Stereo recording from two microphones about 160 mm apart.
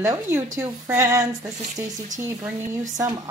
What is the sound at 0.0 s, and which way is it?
A woman's voice, 15° right (ahead or behind).